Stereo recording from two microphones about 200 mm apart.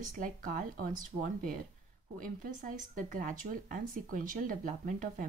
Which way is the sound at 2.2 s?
40° right (ahead or behind).